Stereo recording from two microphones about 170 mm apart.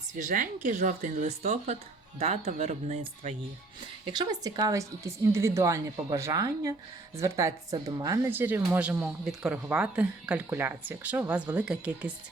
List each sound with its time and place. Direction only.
0.2 s speech: 50° right (ahead or behind)
4.0 s a woman's voice: 25° right (ahead or behind); by 12.1 s 5° right (ahead or behind)